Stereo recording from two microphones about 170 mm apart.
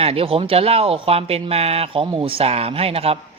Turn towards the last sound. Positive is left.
turn(degrees=-35)  # may be behind; listen again after turning